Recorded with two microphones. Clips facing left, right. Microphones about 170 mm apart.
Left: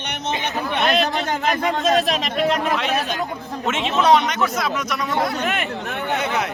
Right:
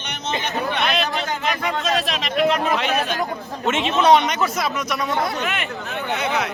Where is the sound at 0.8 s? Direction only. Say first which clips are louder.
Left 3 dB; 40° left (ahead or behind).